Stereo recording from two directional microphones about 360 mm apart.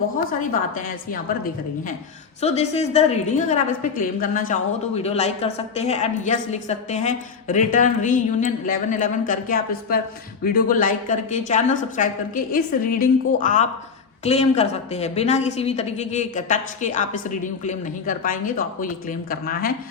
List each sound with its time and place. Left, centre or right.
0.8 s a woman's voice: left
2.4 s a woman's voice: centre